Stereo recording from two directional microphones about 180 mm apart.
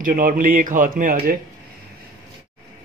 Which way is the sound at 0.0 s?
50° right (ahead or behind).